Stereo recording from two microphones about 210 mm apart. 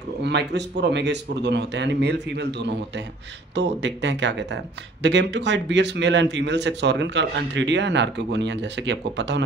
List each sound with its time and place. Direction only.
0.2 s a man's voice: 55° right (ahead or behind)